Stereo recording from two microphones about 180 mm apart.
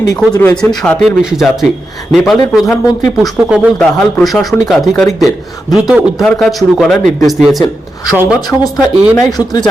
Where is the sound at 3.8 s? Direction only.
5° left (ahead or behind).